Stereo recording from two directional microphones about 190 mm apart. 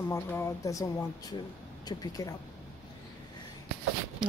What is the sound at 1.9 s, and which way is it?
Speech, 20° left (ahead or behind).